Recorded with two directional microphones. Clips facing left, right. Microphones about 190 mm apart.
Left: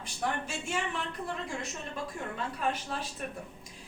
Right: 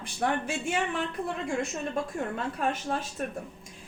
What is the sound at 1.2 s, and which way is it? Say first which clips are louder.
A woman's voice: right 6 dB; 45° right (ahead or behind).